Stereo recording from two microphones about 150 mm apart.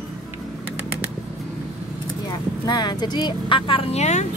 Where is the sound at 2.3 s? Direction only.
25° left (ahead or behind); by 4.2 s 50° left (ahead or behind).